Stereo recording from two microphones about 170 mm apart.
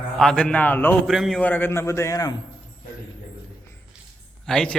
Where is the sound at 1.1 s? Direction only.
Centre (ahead or behind); by 2.3 s 20° left (ahead or behind).